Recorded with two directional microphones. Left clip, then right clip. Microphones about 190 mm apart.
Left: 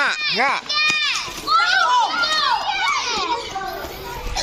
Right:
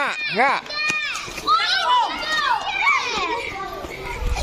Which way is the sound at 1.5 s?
20° right (ahead or behind).